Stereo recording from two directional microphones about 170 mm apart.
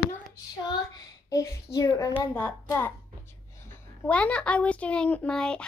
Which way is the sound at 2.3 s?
10° left (ahead or behind).